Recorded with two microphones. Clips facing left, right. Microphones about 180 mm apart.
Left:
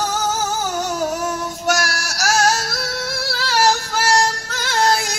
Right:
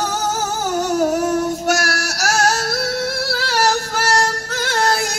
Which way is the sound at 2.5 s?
60° right (ahead or behind).